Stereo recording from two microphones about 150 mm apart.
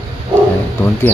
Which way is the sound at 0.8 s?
15° left (ahead or behind).